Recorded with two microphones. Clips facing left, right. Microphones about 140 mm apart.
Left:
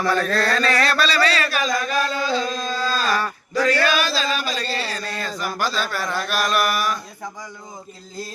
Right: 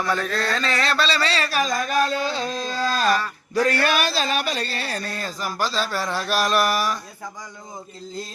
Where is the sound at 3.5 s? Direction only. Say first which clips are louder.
Left 1 dB; 55° right (ahead or behind); by 7.0 s 35° right (ahead or behind).